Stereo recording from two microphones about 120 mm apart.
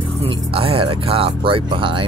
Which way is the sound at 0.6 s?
50° right (ahead or behind).